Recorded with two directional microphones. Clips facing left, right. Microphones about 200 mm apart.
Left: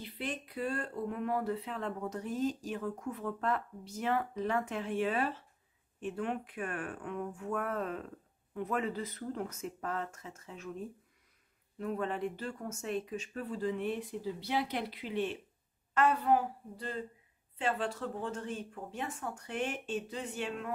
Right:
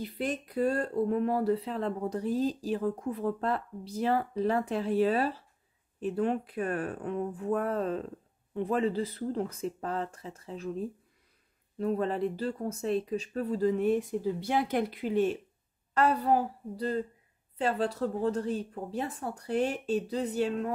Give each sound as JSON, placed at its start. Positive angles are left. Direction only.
{"t": 0.0, "sound": "speech", "side_deg": -45}